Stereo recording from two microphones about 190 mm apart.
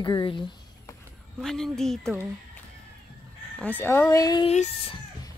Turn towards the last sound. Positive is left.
turn(degrees=35)  # may be behind; listen again after turning